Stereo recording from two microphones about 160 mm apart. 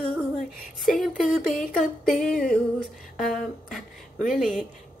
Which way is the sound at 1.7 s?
Centre (ahead or behind).